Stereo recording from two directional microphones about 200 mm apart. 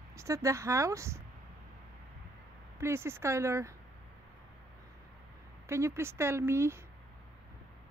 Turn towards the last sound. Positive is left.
turn(degrees=-15)  # may be behind; listen again after turning